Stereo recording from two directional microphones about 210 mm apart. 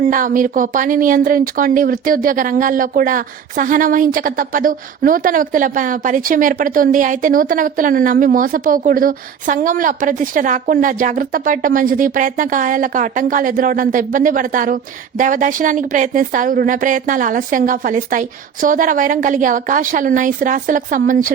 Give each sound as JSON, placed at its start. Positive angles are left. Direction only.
{"t": 0.0, "sound": "speech", "side_deg": -40}